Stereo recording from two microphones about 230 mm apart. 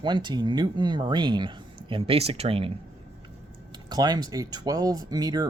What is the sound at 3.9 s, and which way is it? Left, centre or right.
Speech, centre.